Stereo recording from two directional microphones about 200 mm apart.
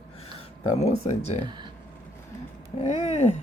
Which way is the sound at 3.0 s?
35° left (ahead or behind).